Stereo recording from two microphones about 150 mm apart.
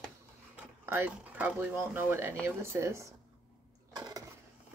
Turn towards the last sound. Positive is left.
turn(degrees=-25)  # may be behind; listen again after turning